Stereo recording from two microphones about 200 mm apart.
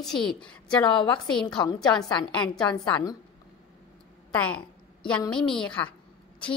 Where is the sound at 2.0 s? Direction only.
20° left (ahead or behind).